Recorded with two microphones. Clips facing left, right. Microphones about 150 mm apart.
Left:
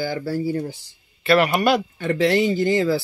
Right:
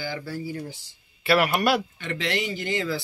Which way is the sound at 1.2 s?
5° right (ahead or behind).